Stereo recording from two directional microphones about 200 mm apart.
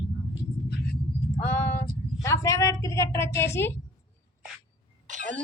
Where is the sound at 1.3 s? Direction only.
10° left (ahead or behind).